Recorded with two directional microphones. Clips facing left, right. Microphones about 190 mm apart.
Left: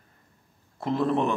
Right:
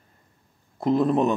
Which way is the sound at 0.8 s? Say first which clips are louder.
Right 4 dB; 15° right (ahead or behind).